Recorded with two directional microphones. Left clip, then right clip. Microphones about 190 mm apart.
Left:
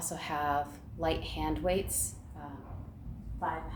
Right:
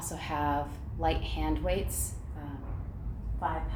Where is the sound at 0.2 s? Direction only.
30° left (ahead or behind).